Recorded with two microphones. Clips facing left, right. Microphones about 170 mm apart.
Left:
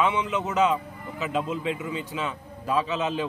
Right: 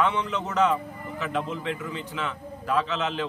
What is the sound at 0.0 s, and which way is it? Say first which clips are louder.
Speech: left 1 dB; 10° left (ahead or behind).